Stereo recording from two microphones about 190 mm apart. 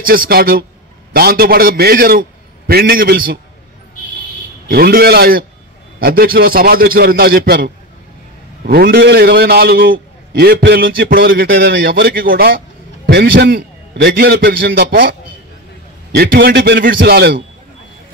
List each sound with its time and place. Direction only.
0.0 s a man's voice: 50° right (ahead or behind)
4.6 s a man's voice: 55° right (ahead or behind)